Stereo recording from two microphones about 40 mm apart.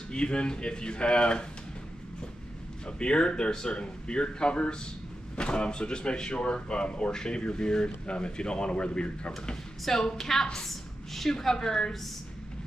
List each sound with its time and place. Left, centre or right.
0.1 s speech: left
3.0 s speech: left
9.5 s speech: centre
10.7 s a sound: centre
11.3 s speech: centre